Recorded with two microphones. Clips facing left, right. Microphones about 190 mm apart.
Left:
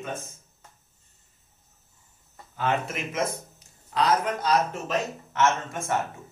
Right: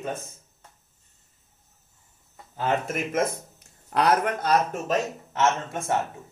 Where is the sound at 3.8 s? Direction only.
60° right (ahead or behind); by 5.4 s 45° right (ahead or behind).